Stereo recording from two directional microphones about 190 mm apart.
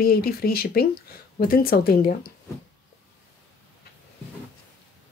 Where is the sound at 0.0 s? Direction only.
55° left (ahead or behind).